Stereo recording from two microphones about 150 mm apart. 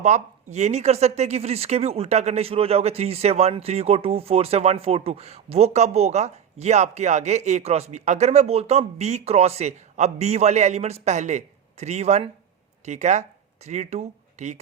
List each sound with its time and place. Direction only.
0.0 s speech: 50° right (ahead or behind)